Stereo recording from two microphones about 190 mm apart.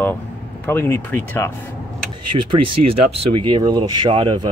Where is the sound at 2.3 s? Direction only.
25° right (ahead or behind).